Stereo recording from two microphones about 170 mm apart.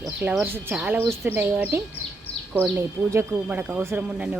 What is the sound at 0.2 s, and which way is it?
Speech, 10° right (ahead or behind).